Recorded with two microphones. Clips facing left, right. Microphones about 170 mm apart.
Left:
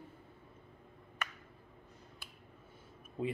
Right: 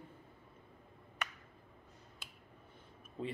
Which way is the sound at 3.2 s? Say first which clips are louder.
Left 4 dB; 5° left (ahead or behind).